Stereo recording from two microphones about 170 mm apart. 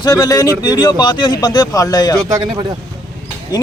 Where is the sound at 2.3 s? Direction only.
25° right (ahead or behind).